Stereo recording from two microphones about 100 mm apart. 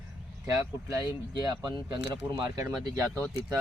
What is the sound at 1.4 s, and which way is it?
Speech, 45° right (ahead or behind).